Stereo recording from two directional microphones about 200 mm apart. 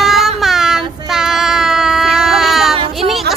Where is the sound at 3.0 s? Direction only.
Centre (ahead or behind).